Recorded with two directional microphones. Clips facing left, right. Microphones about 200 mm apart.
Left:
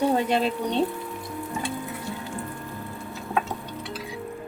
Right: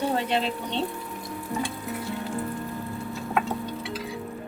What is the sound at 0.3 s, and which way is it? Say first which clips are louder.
Speech: left 3 dB; 45° left (ahead or behind).